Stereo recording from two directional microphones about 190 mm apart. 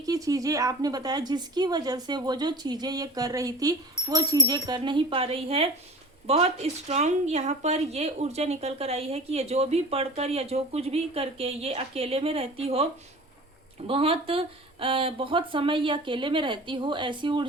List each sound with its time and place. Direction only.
0.0 s a woman's voice: 20° right (ahead or behind)